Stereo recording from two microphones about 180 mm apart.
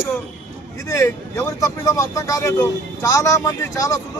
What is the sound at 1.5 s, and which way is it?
Speech, 20° left (ahead or behind).